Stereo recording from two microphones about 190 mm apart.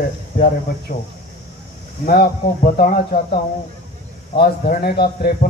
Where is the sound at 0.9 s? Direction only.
50° left (ahead or behind).